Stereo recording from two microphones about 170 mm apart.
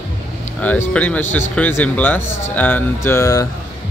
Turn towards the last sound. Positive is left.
turn(degrees=20)  # may be behind; listen again after turning